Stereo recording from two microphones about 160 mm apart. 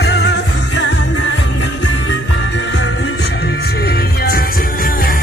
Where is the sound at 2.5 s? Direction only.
90° left; by 5.2 s 60° left (ahead or behind).